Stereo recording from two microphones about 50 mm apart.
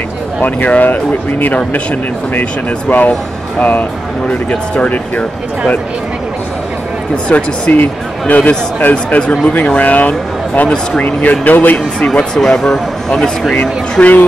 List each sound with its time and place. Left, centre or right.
0.4 s speech: left
2.9 s speech: left
7.2 s speech: left
12.4 s speech: centre
13.6 s speech: left